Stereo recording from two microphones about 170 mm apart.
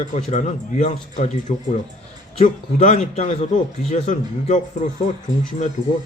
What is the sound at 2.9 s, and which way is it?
A man's voice, 40° left (ahead or behind).